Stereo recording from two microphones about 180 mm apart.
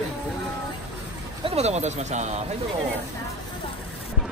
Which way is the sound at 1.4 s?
35° right (ahead or behind).